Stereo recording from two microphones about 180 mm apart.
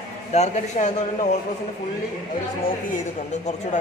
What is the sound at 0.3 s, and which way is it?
Speech, 40° left (ahead or behind).